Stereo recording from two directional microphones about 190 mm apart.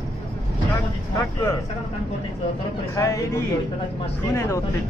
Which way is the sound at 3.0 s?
20° left (ahead or behind).